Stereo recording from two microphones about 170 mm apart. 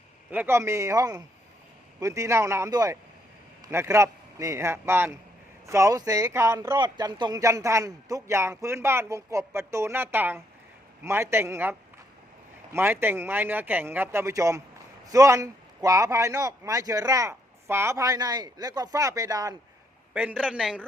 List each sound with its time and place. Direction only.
0.3 s a man's voice: 10° right (ahead or behind)
20.1 s speech: 10° right (ahead or behind)